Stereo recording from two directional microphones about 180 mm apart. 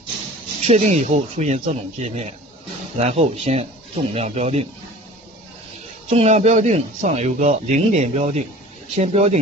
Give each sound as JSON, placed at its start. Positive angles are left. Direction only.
{"t": 0.7, "sound": "speech", "side_deg": -35}
{"t": 6.0, "sound": "speech", "side_deg": -35}